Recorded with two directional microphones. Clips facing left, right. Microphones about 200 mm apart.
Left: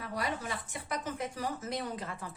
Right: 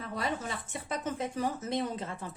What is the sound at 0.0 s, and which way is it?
A woman's voice, 25° right (ahead or behind).